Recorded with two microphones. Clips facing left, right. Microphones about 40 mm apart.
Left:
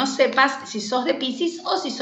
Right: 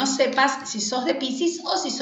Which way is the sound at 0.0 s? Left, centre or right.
Left.